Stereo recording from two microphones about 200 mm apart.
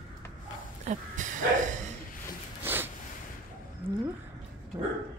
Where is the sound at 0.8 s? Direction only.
40° right (ahead or behind).